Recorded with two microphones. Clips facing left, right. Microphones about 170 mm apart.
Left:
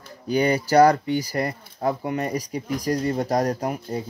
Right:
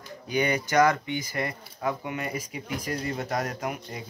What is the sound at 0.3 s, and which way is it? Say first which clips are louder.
Speech: left 6 dB; 35° left (ahead or behind).